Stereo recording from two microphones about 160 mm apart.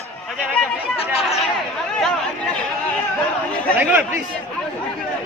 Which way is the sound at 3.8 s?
10° right (ahead or behind).